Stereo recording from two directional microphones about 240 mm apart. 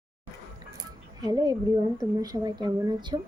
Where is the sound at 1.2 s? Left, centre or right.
Centre.